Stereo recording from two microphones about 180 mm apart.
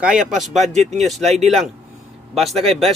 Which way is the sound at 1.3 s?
35° right (ahead or behind).